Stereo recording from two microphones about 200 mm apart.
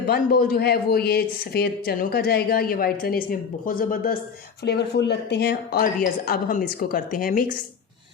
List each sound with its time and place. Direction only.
0.0 s speech: 50° left (ahead or behind)
4.6 s speech: 55° left (ahead or behind)